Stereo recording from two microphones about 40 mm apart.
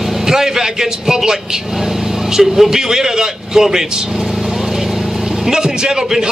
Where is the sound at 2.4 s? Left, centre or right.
Centre.